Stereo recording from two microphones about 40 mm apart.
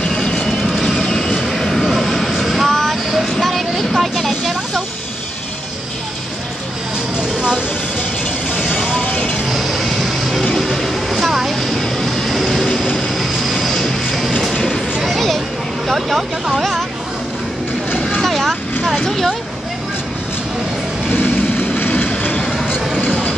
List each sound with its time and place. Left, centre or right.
0.1 s vehicle: centre
0.7 s vehicle: centre
0.9 s vehicle: centre
7.2 s a sound: right
8.9 s music: left
9.5 s music: centre
10.8 s vehicle: centre
13.8 s music: centre
15.0 s a sound: centre
15.9 s vehicle: centre
18.2 s vehicle: centre
19.0 s a sound: centre
21.2 s vehicle: left